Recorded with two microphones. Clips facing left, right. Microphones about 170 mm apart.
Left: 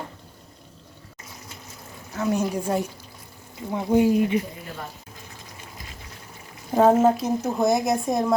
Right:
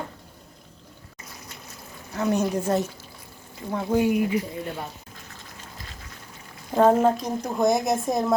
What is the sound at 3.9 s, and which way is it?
Speech, 25° left (ahead or behind).